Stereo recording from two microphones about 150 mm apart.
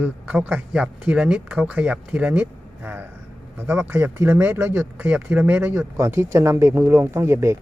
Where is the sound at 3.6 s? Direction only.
15° right (ahead or behind).